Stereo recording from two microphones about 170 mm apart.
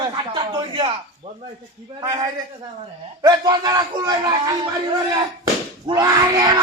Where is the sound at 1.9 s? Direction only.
20° right (ahead or behind).